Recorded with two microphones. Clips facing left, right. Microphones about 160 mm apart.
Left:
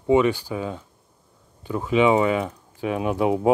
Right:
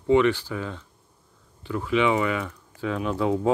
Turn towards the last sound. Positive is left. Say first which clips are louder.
# left 3 dB
turn(degrees=15)  # may be behind; listen again after turning